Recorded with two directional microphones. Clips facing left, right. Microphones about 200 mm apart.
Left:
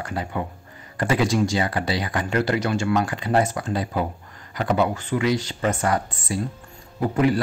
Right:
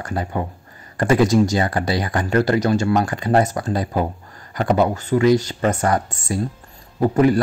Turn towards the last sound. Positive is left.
turn(degrees=-45)  # may be behind; listen again after turning